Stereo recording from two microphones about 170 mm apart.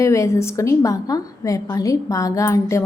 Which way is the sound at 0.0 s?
20° left (ahead or behind).